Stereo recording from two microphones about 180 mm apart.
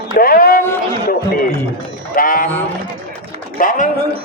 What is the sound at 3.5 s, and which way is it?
Speech, 45° left (ahead or behind).